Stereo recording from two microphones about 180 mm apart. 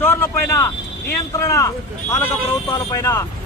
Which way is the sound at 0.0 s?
15° left (ahead or behind).